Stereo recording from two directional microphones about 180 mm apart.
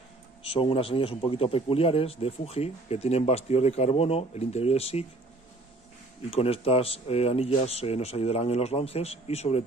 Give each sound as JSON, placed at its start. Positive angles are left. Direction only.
{"t": 0.4, "sound": "a man's voice", "side_deg": 30}
{"t": 6.3, "sound": "a man's voice", "side_deg": 35}